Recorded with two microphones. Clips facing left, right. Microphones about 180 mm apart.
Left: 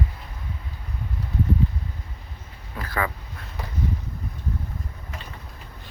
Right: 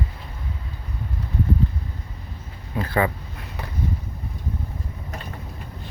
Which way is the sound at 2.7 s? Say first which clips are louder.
Right 6 dB; 25° right (ahead or behind).